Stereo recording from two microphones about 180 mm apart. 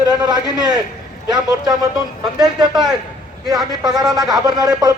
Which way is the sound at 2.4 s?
25° right (ahead or behind).